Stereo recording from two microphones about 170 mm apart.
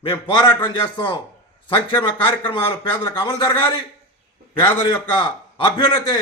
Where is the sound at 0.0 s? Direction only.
30° left (ahead or behind).